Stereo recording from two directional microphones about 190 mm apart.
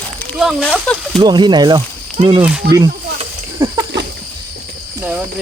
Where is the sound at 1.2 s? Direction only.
25° right (ahead or behind).